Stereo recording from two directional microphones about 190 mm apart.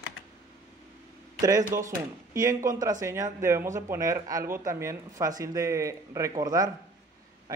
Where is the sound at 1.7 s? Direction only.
15° right (ahead or behind).